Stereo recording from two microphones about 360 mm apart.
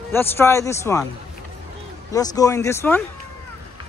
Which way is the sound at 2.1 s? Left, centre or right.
Centre.